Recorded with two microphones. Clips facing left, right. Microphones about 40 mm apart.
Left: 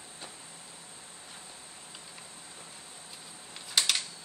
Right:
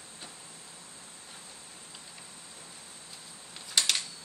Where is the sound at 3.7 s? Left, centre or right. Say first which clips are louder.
Even; centre.